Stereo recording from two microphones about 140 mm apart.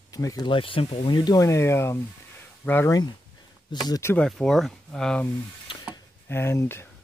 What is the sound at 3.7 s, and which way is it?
Speech, 30° left (ahead or behind).